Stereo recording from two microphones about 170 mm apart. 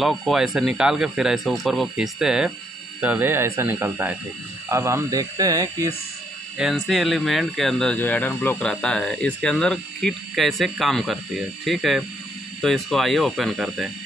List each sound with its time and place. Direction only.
0.0 s speech: centre (ahead or behind); by 5.9 s 20° right (ahead or behind)
6.6 s speech: centre (ahead or behind)